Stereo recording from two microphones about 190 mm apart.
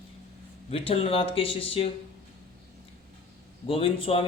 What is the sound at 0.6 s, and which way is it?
A man's voice, 30° left (ahead or behind).